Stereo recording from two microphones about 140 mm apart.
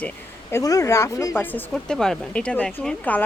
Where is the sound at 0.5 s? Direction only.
25° left (ahead or behind).